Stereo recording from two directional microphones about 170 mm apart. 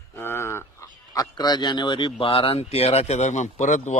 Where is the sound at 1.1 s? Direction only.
25° left (ahead or behind).